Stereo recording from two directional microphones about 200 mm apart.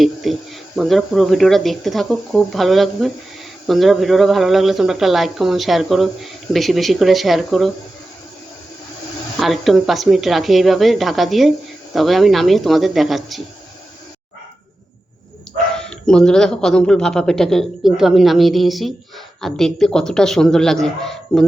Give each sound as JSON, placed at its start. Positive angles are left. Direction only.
{"t": 0.0, "sound": "speech", "side_deg": 0}
{"t": 9.4, "sound": "speech", "side_deg": 0}
{"t": 15.8, "sound": "speech", "side_deg": 5}